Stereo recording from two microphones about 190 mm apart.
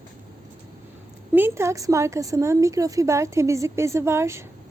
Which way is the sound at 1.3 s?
10° right (ahead or behind).